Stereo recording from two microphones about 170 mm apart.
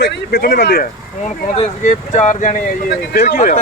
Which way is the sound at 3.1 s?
65° left (ahead or behind).